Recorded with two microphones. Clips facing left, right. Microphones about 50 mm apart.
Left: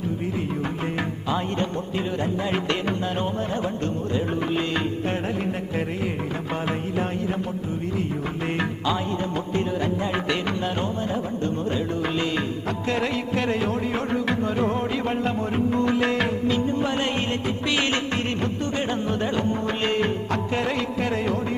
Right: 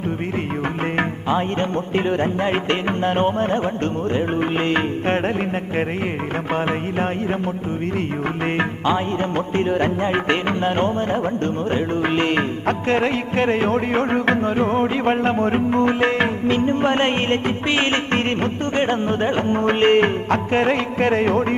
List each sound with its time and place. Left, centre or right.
1.3 s music: right
2.0 s music: right
6.5 s music: right
9.6 s music: right
16.6 s music: right